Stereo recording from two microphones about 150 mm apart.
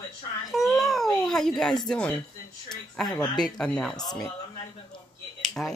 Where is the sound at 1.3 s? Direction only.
Centre (ahead or behind).